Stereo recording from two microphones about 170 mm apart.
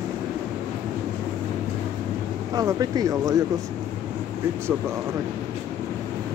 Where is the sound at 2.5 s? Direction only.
20° right (ahead or behind).